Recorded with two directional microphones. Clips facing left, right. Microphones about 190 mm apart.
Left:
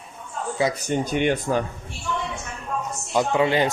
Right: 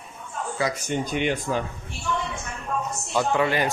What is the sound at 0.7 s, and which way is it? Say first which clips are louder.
Speech: left 3 dB; 50° left (ahead or behind).